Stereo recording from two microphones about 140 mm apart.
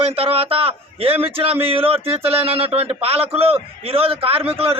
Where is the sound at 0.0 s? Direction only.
45° right (ahead or behind).